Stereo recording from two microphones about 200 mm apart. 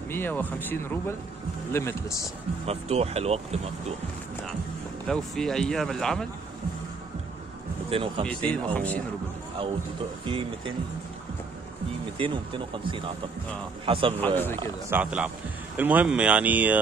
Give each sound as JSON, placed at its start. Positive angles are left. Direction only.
{"t": 0.1, "sound": "speech", "side_deg": 10}
{"t": 2.6, "sound": "speech", "side_deg": -30}
{"t": 5.0, "sound": "speech", "side_deg": 0}
{"t": 7.9, "sound": "speech", "side_deg": -25}
{"t": 8.3, "sound": "speech", "side_deg": 5}
{"t": 10.2, "sound": "speech", "side_deg": -25}
{"t": 12.2, "sound": "speech", "side_deg": -25}
{"t": 14.2, "sound": "speech", "side_deg": 10}
{"t": 14.9, "sound": "speech", "side_deg": -5}